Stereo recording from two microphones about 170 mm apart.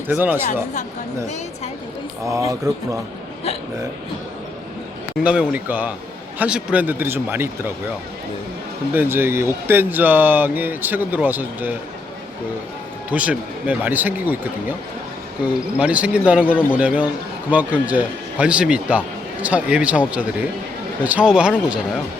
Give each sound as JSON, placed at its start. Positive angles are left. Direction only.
{"t": 0.1, "sound": "speech", "side_deg": -10}
{"t": 2.5, "sound": "speech", "side_deg": -20}
{"t": 5.2, "sound": "speech", "side_deg": -5}
{"t": 8.9, "sound": "speech", "side_deg": -10}
{"t": 13.1, "sound": "speech", "side_deg": -10}